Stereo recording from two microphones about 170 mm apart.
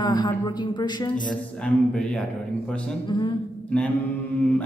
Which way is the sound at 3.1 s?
25° left (ahead or behind).